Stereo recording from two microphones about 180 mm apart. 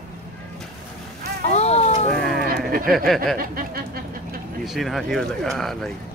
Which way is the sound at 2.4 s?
55° right (ahead or behind).